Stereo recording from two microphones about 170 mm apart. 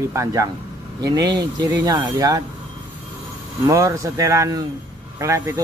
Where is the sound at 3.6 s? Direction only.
20° right (ahead or behind).